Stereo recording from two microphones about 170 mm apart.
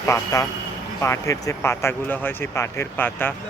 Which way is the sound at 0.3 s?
20° left (ahead or behind).